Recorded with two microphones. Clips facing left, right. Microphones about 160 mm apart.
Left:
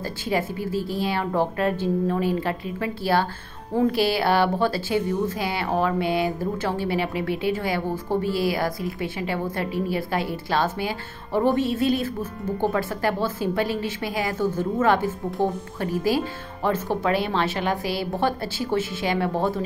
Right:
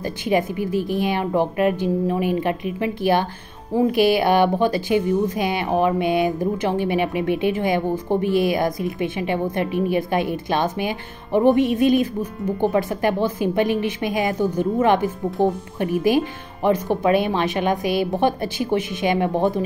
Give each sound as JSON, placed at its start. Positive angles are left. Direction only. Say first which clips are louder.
{"t": 0.0, "sound": "a woman's voice", "louder": "right 5 dB", "side_deg": -20}